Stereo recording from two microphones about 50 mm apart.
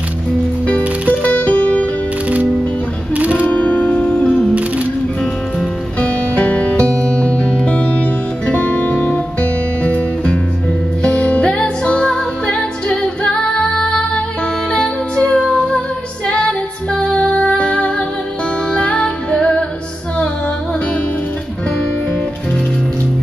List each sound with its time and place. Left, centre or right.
1.2 s music: left
3.2 s music: right
3.5 s music: left
5.9 s music: left
16.3 s female singing: centre
18.7 s music: left